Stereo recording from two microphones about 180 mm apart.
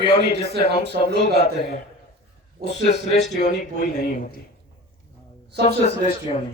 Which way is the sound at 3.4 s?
40° left (ahead or behind).